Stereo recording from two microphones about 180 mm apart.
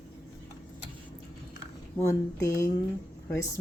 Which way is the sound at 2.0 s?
15° left (ahead or behind).